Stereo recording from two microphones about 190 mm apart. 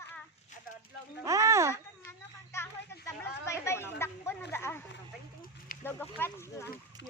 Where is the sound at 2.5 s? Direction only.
15° left (ahead or behind).